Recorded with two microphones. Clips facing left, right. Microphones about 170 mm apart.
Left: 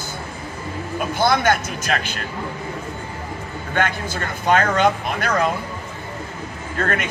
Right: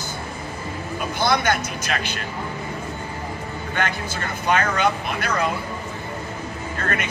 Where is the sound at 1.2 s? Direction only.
50° left (ahead or behind).